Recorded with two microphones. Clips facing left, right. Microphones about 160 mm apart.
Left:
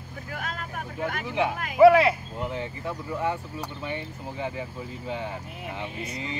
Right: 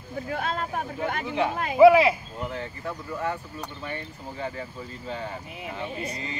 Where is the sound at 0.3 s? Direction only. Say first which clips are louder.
Right 6 dB; 30° right (ahead or behind).